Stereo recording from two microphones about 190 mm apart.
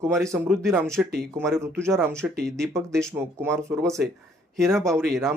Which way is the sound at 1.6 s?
15° right (ahead or behind).